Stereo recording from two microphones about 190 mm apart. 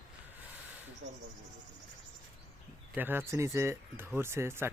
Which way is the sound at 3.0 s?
10° right (ahead or behind).